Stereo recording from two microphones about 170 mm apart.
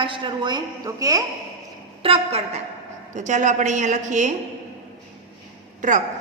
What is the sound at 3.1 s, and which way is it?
A woman's voice, 45° right (ahead or behind).